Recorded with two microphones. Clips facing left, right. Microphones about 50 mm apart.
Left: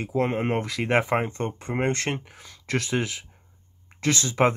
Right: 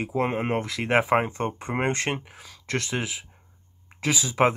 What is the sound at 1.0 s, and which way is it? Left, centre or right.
Speech, centre.